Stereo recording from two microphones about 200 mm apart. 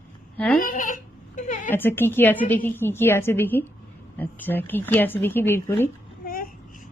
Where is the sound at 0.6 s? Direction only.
40° left (ahead or behind).